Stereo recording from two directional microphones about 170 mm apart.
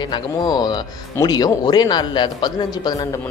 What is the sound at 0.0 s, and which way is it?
Speech, 25° left (ahead or behind).